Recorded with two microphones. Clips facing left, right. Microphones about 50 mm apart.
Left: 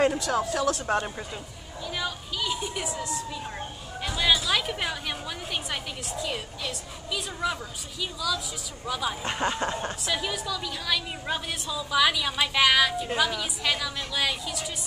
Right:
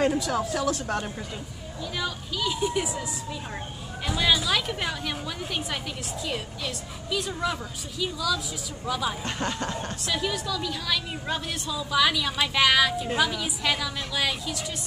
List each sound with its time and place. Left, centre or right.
0.1 s a woman's voice: centre
0.8 s speech: left
2.0 s a woman's voice: centre
9.2 s speech: centre
10.0 s a woman's voice: centre